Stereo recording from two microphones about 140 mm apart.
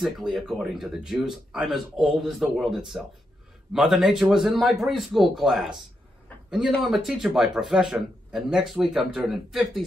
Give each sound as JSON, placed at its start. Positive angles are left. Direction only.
{"t": 0.0, "sound": "a man's voice", "side_deg": -5}
{"t": 6.8, "sound": "a man's voice", "side_deg": 0}